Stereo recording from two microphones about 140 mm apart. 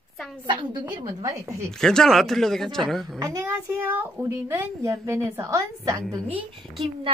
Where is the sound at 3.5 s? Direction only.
15° right (ahead or behind).